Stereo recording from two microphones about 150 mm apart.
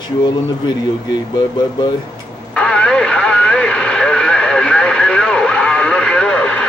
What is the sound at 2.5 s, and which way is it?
Radio, 5° left (ahead or behind).